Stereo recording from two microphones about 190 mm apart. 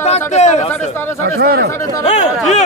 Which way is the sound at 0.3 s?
35° left (ahead or behind).